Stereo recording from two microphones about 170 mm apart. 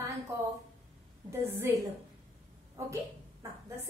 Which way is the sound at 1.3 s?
15° right (ahead or behind).